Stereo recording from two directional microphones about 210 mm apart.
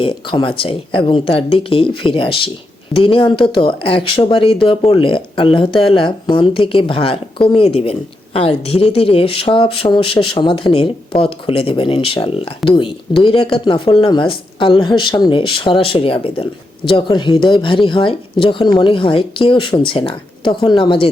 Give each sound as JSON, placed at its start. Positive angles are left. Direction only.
{"t": 0.0, "sound": "speech", "side_deg": 25}